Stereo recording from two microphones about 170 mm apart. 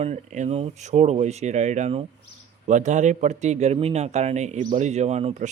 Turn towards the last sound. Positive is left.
turn(degrees=-40)  # may be behind; listen again after turning